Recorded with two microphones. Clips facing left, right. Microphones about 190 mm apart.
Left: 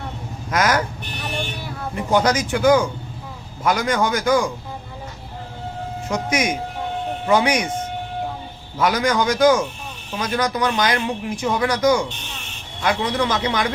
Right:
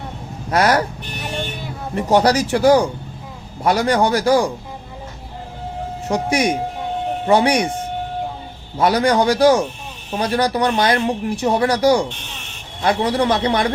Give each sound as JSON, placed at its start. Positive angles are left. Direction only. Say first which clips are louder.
{"t": 0.5, "sound": "speech", "louder": "right 4 dB", "side_deg": -35}
{"t": 2.0, "sound": "speech", "louder": "right 4 dB", "side_deg": -35}
{"t": 6.1, "sound": "speech", "louder": "right 4 dB", "side_deg": -35}
{"t": 8.8, "sound": "speech", "louder": "right 4 dB", "side_deg": -35}